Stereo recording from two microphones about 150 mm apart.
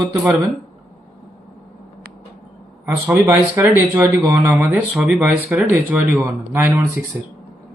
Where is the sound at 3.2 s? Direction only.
15° right (ahead or behind).